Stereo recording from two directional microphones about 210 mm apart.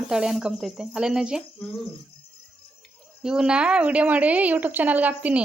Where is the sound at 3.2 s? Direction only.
5° right (ahead or behind).